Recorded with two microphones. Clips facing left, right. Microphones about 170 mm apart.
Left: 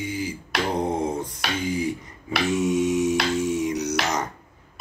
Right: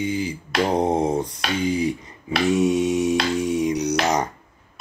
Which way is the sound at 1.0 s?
20° right (ahead or behind).